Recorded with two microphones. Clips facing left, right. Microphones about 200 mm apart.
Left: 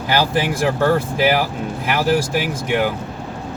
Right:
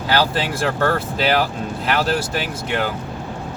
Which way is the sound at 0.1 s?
15° left (ahead or behind).